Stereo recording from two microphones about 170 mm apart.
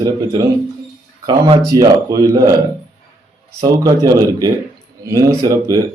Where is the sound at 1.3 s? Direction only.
35° right (ahead or behind).